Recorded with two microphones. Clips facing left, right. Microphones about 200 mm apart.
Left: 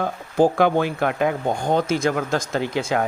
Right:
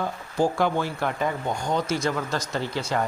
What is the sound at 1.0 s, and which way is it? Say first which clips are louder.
Speech: left 5 dB; 65° left (ahead or behind).